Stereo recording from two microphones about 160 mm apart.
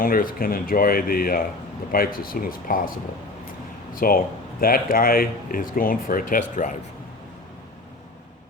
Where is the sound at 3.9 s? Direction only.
65° left (ahead or behind).